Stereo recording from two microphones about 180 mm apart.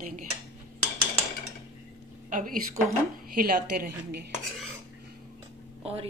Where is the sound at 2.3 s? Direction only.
50° right (ahead or behind).